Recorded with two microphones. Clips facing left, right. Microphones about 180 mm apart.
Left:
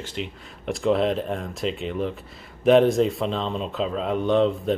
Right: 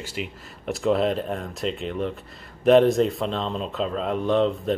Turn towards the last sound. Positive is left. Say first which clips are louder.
# left 1 dB
turn(degrees=0)  # may be behind; listen again after turning